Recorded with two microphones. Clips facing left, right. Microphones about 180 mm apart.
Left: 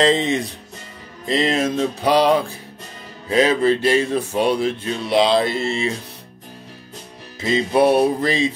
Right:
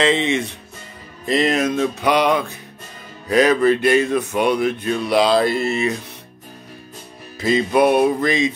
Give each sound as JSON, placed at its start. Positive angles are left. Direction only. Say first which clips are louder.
{"t": 0.0, "sound": "music", "louder": "left 1 dB", "side_deg": 35}
{"t": 7.3, "sound": "music", "louder": "right 1 dB", "side_deg": 25}